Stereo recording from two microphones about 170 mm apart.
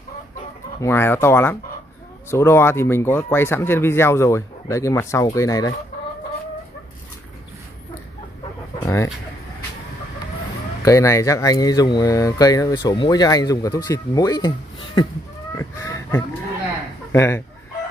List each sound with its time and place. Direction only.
0.7 s speech: 15° left (ahead or behind)
8.8 s a sound: 15° left (ahead or behind)
10.8 s speech: 20° left (ahead or behind)
15.5 s fowl: 15° left (ahead or behind)
17.1 s speech: 15° left (ahead or behind)